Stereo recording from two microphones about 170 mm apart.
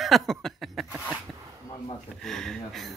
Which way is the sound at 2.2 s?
5° left (ahead or behind).